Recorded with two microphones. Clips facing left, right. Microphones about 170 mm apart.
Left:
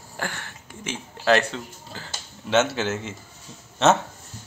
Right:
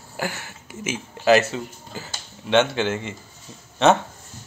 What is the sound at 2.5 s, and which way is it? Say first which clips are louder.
Speech: right 2 dB; 5° left (ahead or behind).